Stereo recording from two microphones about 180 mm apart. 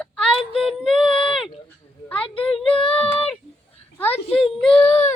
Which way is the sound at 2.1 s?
30° left (ahead or behind).